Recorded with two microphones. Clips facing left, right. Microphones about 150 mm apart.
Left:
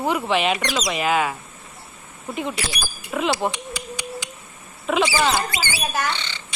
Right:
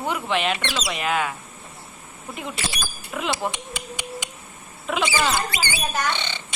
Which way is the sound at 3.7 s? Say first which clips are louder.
Left 2 dB; 20° right (ahead or behind).